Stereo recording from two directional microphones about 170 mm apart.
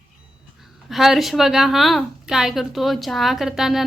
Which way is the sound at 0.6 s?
Centre (ahead or behind).